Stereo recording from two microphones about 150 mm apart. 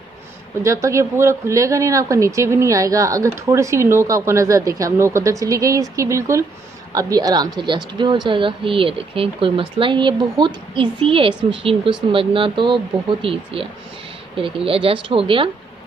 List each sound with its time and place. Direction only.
0.6 s speech: 20° right (ahead or behind); by 15.5 s 35° right (ahead or behind)